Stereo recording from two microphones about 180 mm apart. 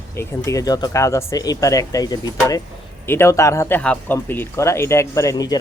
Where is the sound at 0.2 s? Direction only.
15° left (ahead or behind).